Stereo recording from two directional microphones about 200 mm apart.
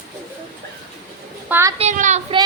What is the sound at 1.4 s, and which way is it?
Speech, 10° right (ahead or behind).